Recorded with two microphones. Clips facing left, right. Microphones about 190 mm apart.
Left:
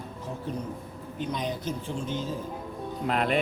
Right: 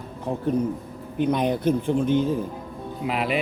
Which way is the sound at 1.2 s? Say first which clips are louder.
Right 10 dB; 60° right (ahead or behind).